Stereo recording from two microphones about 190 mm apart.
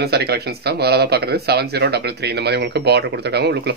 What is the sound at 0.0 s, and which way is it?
Speech, 60° right (ahead or behind).